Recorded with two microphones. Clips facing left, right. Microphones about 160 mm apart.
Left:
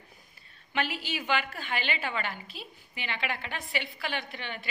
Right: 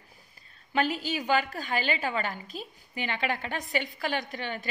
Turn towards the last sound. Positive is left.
turn(degrees=-45)  # may be behind; listen again after turning